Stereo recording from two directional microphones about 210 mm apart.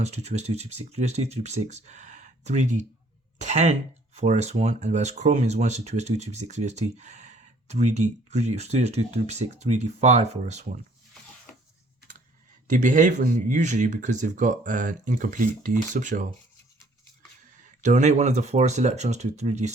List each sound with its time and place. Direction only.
0.0 s speech: 30° right (ahead or behind)
12.7 s speech: 35° right (ahead or behind)
17.6 s speech: 35° right (ahead or behind)